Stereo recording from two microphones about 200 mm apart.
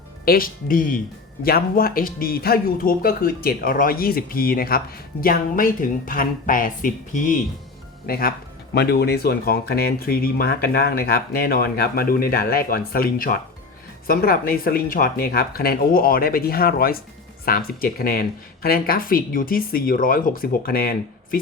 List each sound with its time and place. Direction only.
0.3 s speech: 45° left (ahead or behind)